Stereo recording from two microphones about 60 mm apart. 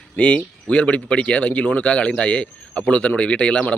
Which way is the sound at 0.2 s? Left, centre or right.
Left.